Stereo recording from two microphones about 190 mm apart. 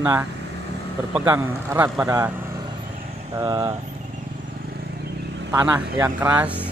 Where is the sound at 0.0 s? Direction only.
15° right (ahead or behind).